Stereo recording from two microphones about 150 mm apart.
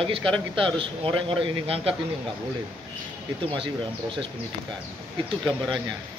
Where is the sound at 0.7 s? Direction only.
35° right (ahead or behind).